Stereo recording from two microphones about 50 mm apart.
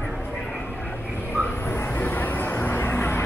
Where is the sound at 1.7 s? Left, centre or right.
Left.